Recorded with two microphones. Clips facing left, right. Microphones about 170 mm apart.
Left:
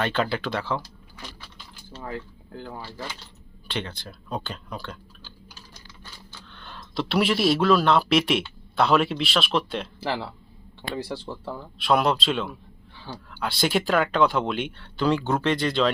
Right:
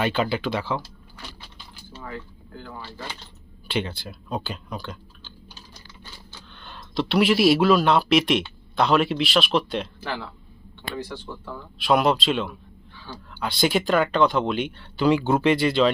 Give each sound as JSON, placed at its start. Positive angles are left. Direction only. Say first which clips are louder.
{"t": 0.0, "sound": "speech", "louder": "right 2 dB", "side_deg": -5}
{"t": 3.7, "sound": "speech", "louder": "right 5 dB", "side_deg": -10}
{"t": 6.5, "sound": "speech", "louder": "even", "side_deg": 0}
{"t": 10.0, "sound": "speech", "louder": "left 3 dB", "side_deg": 30}
{"t": 11.8, "sound": "speech", "louder": "right 2 dB", "side_deg": 0}